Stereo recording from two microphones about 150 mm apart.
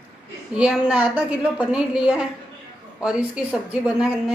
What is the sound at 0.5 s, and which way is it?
A woman's voice, 5° right (ahead or behind).